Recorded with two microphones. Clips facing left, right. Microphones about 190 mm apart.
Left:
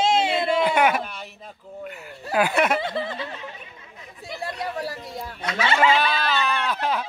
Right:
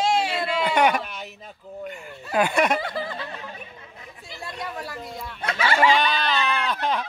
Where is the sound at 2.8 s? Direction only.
25° left (ahead or behind).